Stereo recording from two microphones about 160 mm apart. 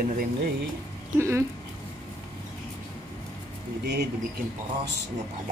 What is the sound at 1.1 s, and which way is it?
Speech, 20° right (ahead or behind).